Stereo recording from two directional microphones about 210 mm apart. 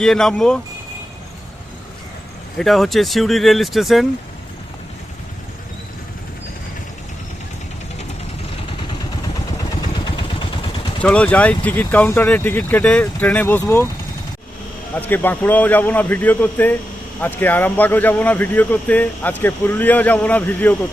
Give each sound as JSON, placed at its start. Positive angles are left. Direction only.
{"t": 0.0, "sound": "speech", "side_deg": 0}
{"t": 2.6, "sound": "speech", "side_deg": 0}
{"t": 10.1, "sound": "vehicle", "side_deg": 20}
{"t": 11.0, "sound": "speech", "side_deg": 5}
{"t": 14.9, "sound": "speech", "side_deg": 10}